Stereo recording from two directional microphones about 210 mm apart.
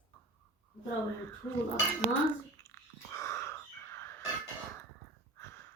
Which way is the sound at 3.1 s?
15° left (ahead or behind).